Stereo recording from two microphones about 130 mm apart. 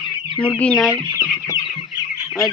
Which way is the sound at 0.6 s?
10° left (ahead or behind).